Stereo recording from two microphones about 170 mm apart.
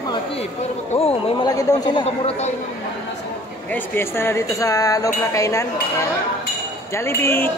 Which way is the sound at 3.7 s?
10° left (ahead or behind).